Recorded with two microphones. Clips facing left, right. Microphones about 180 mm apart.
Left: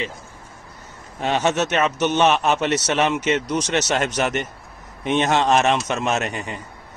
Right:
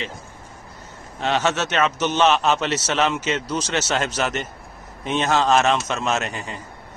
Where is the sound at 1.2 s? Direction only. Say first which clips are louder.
Left 2 dB; 10° left (ahead or behind).